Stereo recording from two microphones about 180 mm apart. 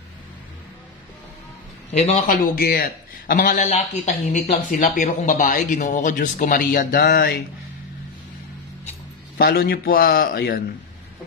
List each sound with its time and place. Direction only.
1.9 s a man's voice: 40° left (ahead or behind)
2.3 s speech: 55° left (ahead or behind)
9.4 s a man's voice: 55° left (ahead or behind)